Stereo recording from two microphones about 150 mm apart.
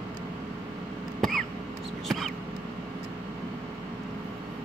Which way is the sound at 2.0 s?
Centre (ahead or behind).